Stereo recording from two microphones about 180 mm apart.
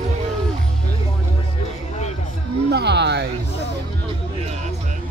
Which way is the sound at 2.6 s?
70° right (ahead or behind).